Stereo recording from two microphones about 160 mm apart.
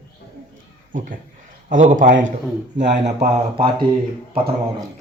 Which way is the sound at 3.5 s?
30° right (ahead or behind).